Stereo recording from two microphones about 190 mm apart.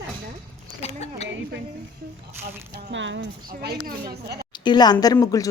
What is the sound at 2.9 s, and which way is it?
Speech, 70° right (ahead or behind).